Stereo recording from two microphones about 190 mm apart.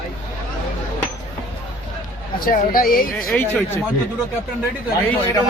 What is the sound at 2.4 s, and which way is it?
Speech, 50° left (ahead or behind).